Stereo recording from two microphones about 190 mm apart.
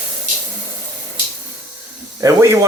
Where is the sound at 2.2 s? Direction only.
15° right (ahead or behind).